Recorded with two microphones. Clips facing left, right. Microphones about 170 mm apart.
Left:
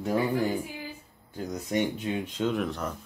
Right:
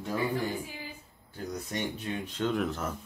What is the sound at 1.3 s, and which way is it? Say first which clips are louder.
Speech: left 6 dB; 15° left (ahead or behind).